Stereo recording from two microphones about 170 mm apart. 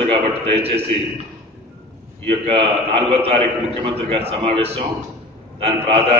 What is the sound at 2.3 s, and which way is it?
A man's voice, 35° right (ahead or behind).